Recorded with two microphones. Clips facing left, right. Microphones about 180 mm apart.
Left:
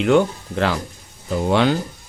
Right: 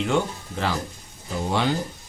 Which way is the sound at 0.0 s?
65° left (ahead or behind).